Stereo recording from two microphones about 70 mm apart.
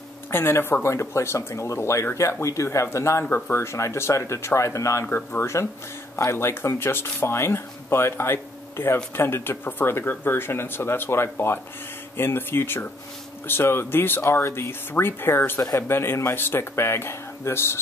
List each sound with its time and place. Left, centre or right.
0.3 s speech: left